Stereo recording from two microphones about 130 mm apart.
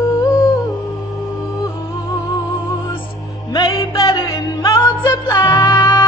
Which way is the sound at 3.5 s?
30° left (ahead or behind).